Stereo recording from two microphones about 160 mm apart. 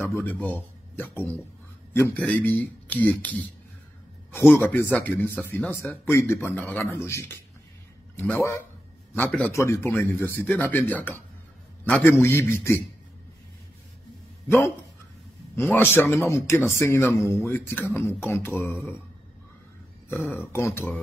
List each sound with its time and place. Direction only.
0.1 s speech: 10° left (ahead or behind)
15.6 s speech: 10° left (ahead or behind)
20.1 s speech: 15° left (ahead or behind)